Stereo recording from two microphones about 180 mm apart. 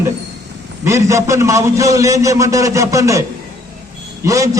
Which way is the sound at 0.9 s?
15° right (ahead or behind).